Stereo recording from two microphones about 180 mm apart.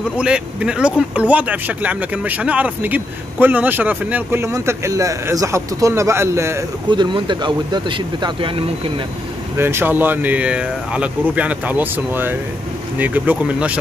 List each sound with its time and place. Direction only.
0.2 s speech: 5° right (ahead or behind)
6.9 s speech: 25° right (ahead or behind)
9.6 s speech: 15° right (ahead or behind)